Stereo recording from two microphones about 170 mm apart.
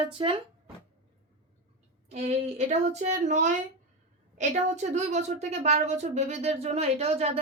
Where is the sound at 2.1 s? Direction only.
40° right (ahead or behind).